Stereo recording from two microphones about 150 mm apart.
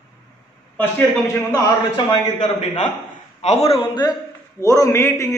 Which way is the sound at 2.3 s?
50° left (ahead or behind).